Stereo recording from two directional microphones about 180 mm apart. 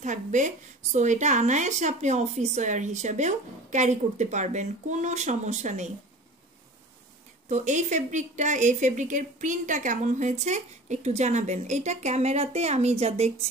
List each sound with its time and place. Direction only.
0.0 s a woman's voice: 40° right (ahead or behind)
7.4 s a woman's voice: 40° right (ahead or behind)